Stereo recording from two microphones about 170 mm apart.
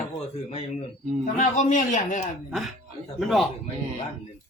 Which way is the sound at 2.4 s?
Centre (ahead or behind).